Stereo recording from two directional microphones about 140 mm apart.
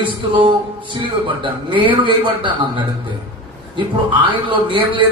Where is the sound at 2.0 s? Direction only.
35° right (ahead or behind).